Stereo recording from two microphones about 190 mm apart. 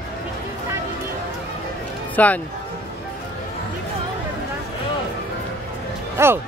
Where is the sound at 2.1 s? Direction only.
10° left (ahead or behind).